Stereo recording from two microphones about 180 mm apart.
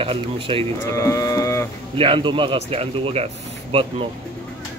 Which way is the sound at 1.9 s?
30° right (ahead or behind).